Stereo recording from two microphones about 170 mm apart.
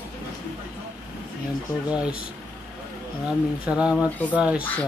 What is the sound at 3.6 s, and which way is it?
Speech, 5° right (ahead or behind).